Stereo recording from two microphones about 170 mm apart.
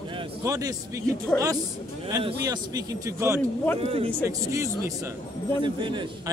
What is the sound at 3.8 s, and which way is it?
Speech, 35° right (ahead or behind).